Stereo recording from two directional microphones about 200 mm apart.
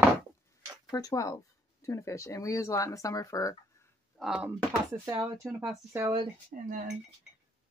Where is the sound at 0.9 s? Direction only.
15° left (ahead or behind).